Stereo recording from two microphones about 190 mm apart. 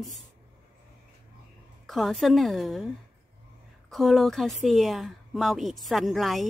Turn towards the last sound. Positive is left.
turn(degrees=0)  # may be behind; listen again after turning